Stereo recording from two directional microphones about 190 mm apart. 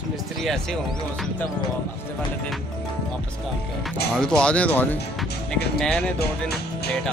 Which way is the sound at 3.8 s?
5° left (ahead or behind).